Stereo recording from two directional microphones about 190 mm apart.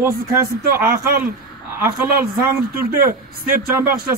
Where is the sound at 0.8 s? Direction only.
50° right (ahead or behind).